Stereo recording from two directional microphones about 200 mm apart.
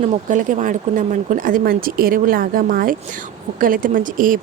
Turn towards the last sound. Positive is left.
turn(degrees=-40)  # may be behind; listen again after turning